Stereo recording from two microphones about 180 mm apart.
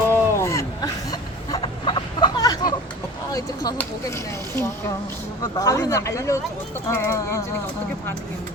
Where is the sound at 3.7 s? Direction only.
15° left (ahead or behind).